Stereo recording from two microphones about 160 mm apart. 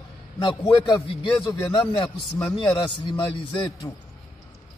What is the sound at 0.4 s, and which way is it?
A man's voice, 30° left (ahead or behind).